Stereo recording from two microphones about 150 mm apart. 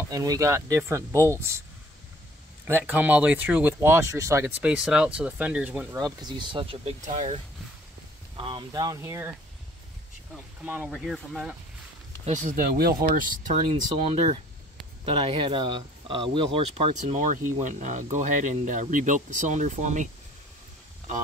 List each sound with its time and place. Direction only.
0.1 s speech: 25° right (ahead or behind)
2.9 s speech: 10° right (ahead or behind)
4.6 s speech: 5° right (ahead or behind)
5.9 s speech: 25° right (ahead or behind); by 7.3 s 45° right (ahead or behind)
8.4 s speech: 30° right (ahead or behind)
10.6 s speech: 10° right (ahead or behind)
12.3 s speech: 60° right (ahead or behind); by 12.9 s 80° right
13.1 s speech: 65° right (ahead or behind)
14.0 s speech: 40° right (ahead or behind)
17.2 s speech: 60° right (ahead or behind)